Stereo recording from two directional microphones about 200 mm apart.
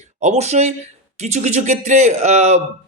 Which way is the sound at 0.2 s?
35° right (ahead or behind).